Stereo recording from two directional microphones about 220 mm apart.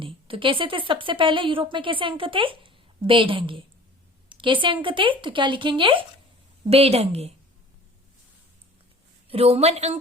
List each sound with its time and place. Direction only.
0.0 s a woman's voice: 25° right (ahead or behind)
9.3 s a woman's voice: 30° right (ahead or behind)